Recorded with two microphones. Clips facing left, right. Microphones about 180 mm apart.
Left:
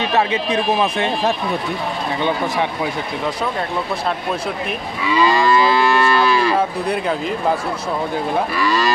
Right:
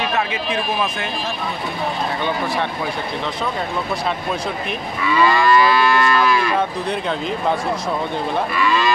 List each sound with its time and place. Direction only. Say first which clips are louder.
0.1 s speech: left 4 dB; 30° left (ahead or behind)
5.1 s moo: even; 20° left (ahead or behind)
6.9 s speech: left 2 dB; 5° left (ahead or behind)
8.5 s speech: right 2 dB; 40° left (ahead or behind)